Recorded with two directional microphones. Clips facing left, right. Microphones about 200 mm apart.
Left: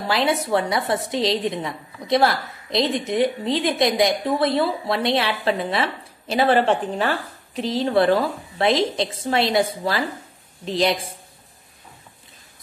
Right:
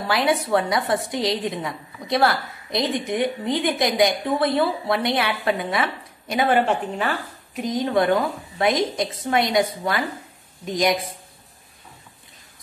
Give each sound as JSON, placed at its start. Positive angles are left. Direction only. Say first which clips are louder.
{"t": 0.1, "sound": "a woman's voice", "louder": "even", "side_deg": 25}